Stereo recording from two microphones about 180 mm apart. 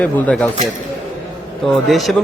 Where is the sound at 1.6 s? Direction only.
Centre (ahead or behind).